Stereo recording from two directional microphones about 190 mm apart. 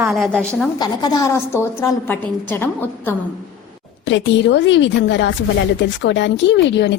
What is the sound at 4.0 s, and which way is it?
Speech, 70° left (ahead or behind).